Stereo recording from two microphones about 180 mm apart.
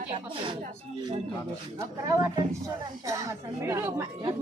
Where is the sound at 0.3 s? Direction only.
25° right (ahead or behind).